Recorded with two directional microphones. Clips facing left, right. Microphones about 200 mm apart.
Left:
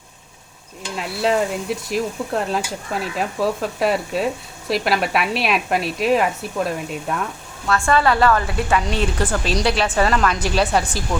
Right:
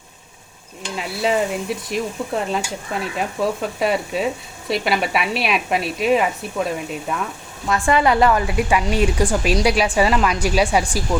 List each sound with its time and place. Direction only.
0.9 s stir: centre (ahead or behind)
7.7 s speech: 15° right (ahead or behind)